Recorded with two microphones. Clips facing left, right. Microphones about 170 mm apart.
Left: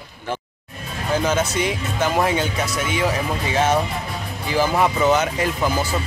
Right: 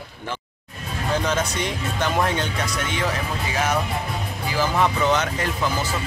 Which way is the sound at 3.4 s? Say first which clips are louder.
Left 5 dB; 25° left (ahead or behind).